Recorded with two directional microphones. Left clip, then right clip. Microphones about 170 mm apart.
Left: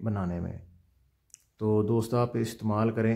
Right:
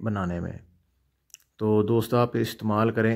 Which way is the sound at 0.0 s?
25° right (ahead or behind).